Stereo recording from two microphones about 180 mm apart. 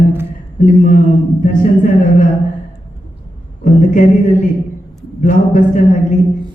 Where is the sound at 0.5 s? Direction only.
45° left (ahead or behind).